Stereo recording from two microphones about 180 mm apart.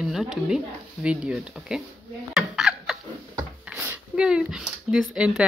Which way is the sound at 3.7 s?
10° right (ahead or behind).